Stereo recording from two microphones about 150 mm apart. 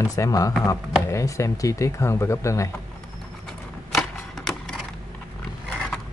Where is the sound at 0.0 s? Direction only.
20° left (ahead or behind).